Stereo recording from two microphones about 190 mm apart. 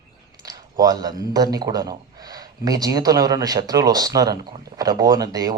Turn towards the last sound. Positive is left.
turn(degrees=-20)  # may be behind; listen again after turning